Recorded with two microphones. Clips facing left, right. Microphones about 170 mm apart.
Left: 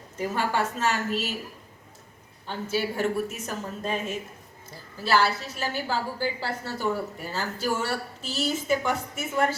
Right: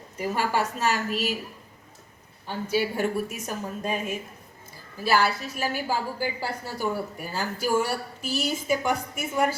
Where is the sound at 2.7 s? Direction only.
10° right (ahead or behind).